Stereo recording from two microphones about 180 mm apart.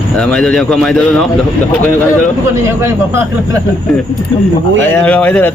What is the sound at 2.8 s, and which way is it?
Speech, 15° right (ahead or behind).